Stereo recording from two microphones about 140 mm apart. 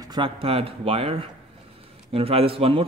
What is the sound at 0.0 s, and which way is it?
Speech, 35° right (ahead or behind).